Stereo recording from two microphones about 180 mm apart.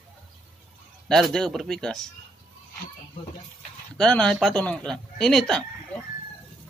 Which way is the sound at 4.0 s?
5° left (ahead or behind).